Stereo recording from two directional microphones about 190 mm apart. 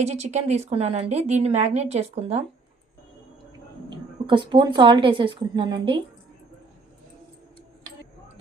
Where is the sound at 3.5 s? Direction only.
25° right (ahead or behind).